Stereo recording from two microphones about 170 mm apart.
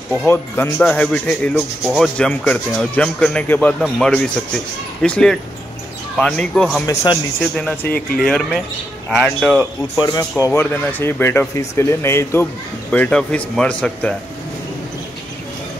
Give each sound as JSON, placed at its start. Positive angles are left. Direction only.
{"t": 0.3, "sound": "speech", "side_deg": 10}
{"t": 6.9, "sound": "speech", "side_deg": 20}
{"t": 7.5, "sound": "speech", "side_deg": 5}
{"t": 9.9, "sound": "speech", "side_deg": 20}